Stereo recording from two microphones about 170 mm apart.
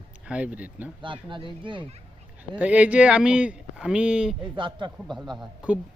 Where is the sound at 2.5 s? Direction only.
10° right (ahead or behind).